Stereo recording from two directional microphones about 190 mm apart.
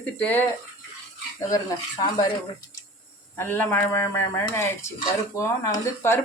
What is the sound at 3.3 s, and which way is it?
Speech, 10° left (ahead or behind).